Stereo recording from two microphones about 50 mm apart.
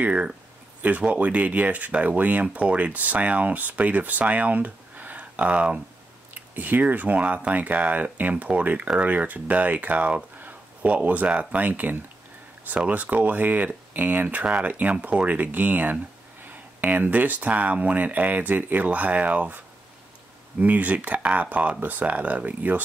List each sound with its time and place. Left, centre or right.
0.0 s speech: right
14.4 s speech: right